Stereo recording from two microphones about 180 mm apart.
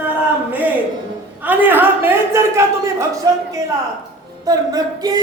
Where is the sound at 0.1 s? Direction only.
10° right (ahead or behind).